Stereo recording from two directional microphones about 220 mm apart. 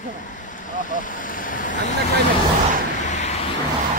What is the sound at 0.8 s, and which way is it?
Speech, 35° left (ahead or behind).